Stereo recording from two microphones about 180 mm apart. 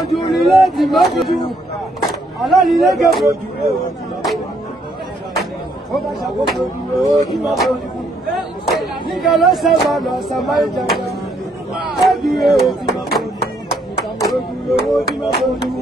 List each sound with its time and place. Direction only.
0.4 s speech: centre (ahead or behind)
2.4 s speech: centre (ahead or behind)
6.2 s speech: centre (ahead or behind)
12.1 s music: centre (ahead or behind)